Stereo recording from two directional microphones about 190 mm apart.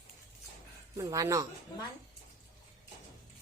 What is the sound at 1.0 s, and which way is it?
Speech, 20° right (ahead or behind).